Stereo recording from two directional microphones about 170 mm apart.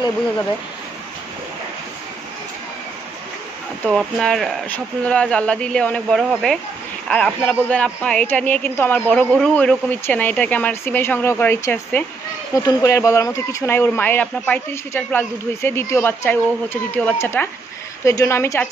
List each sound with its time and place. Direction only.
3.8 s speech: centre (ahead or behind)